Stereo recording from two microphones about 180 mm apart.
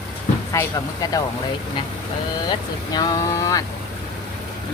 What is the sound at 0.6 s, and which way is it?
Speech, 15° left (ahead or behind).